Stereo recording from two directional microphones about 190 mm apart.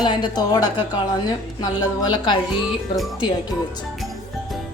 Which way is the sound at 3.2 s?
20° left (ahead or behind).